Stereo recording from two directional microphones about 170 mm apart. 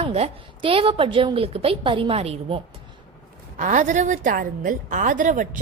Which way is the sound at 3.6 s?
45° right (ahead or behind).